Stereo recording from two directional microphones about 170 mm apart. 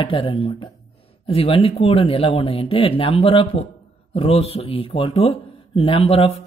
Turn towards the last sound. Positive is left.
turn(degrees=35)  # may be behind; listen again after turning